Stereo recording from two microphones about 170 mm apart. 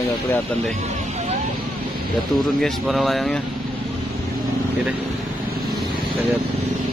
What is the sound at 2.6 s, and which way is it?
Speech, centre (ahead or behind).